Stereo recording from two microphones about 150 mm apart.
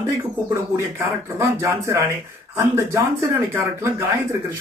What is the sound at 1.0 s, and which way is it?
Speech, 15° right (ahead or behind).